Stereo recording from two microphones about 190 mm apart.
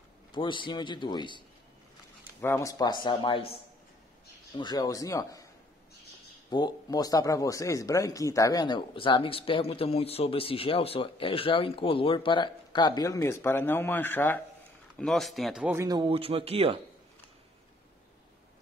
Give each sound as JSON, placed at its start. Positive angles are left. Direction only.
{"t": 0.3, "sound": "speech", "side_deg": 25}
{"t": 2.4, "sound": "speech", "side_deg": 15}
{"t": 4.6, "sound": "speech", "side_deg": 20}
{"t": 6.5, "sound": "a man's voice", "side_deg": 20}
{"t": 15.7, "sound": "a man's voice", "side_deg": -20}